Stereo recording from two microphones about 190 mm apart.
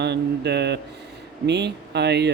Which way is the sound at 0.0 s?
65° right (ahead or behind).